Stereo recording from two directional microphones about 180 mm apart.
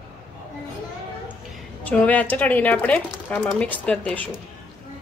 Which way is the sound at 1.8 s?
10° left (ahead or behind).